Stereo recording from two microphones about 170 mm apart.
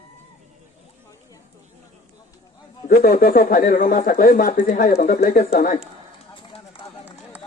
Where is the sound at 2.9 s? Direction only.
60° left (ahead or behind).